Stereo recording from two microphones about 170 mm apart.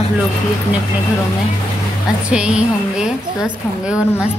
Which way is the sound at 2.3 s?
5° right (ahead or behind).